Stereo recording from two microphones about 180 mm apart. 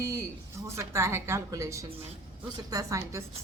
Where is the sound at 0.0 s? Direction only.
15° right (ahead or behind).